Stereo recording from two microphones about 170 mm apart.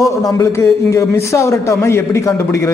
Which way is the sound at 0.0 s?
20° left (ahead or behind).